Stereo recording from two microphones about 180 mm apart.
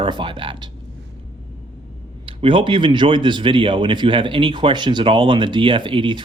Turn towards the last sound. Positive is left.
turn(degrees=-25)  # may be behind; listen again after turning